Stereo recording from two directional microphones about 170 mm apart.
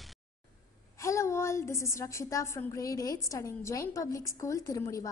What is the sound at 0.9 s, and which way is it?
A woman's voice, 15° left (ahead or behind).